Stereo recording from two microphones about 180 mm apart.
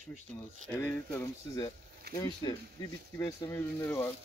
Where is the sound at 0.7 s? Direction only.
15° left (ahead or behind).